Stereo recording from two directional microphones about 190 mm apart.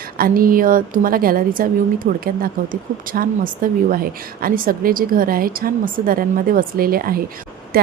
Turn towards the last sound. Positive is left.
turn(degrees=-55)  # may be behind; listen again after turning